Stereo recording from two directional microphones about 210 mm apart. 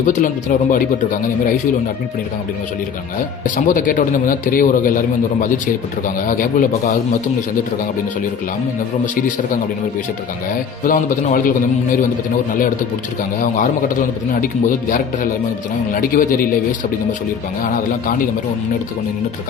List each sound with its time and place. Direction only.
0.0 s a man's voice: 40° left (ahead or behind)
3.4 s a man's voice: 40° left (ahead or behind)
10.8 s a man's voice: 40° left (ahead or behind)
13.4 s a man's voice: 40° left (ahead or behind)